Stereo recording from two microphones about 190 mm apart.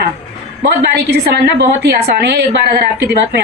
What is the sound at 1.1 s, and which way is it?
A woman's voice, 60° right (ahead or behind).